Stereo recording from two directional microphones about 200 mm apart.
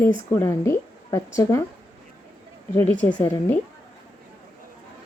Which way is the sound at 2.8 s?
10° left (ahead or behind).